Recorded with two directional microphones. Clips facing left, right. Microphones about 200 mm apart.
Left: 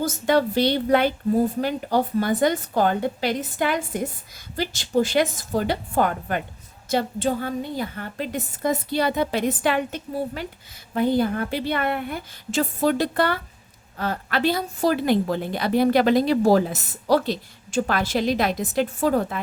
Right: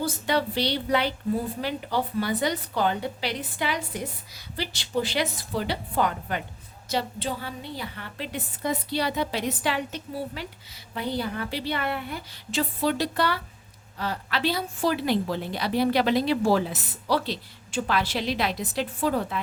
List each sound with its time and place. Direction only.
0.0 s a woman's voice: 45° left (ahead or behind)